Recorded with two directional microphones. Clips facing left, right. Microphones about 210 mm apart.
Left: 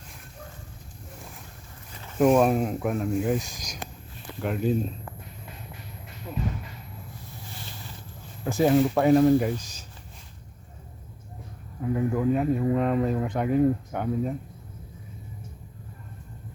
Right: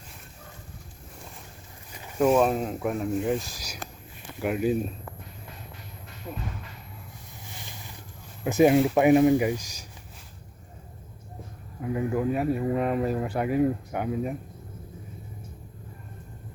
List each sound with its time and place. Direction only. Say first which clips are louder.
1.9 s a sound: right 1 dB; 15° right (ahead or behind)
2.1 s speech: left 2 dB; 5° left (ahead or behind)
8.4 s speech: right 2 dB; 20° right (ahead or behind)
11.8 s speech: left 1 dB; 5° right (ahead or behind)